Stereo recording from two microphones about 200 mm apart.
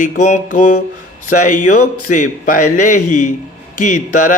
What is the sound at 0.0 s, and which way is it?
A man's voice, 40° left (ahead or behind).